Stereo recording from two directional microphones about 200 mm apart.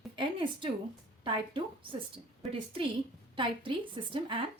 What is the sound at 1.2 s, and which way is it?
A woman's voice, 25° right (ahead or behind).